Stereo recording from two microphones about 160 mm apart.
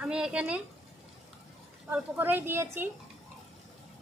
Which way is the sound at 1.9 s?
10° right (ahead or behind).